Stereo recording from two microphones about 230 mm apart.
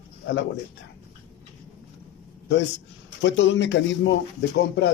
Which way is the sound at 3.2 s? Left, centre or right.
Left.